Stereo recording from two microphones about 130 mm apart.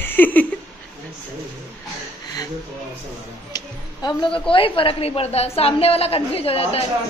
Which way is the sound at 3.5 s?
35° left (ahead or behind).